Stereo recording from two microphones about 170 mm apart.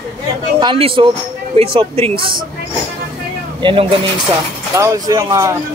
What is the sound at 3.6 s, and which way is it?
Speech, 30° right (ahead or behind).